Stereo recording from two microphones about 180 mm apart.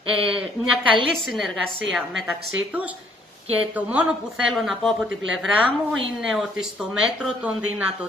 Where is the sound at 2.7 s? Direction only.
10° right (ahead or behind).